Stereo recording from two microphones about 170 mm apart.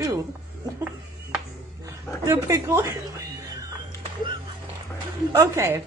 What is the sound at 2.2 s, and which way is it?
A woman's voice, 20° right (ahead or behind).